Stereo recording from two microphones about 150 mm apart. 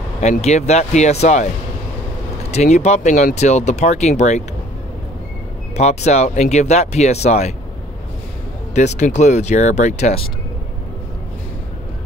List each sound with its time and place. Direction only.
0.2 s speech: 45° left (ahead or behind)
2.5 s speech: 50° left (ahead or behind)
5.8 s speech: 50° left (ahead or behind)
8.7 s speech: 50° left (ahead or behind)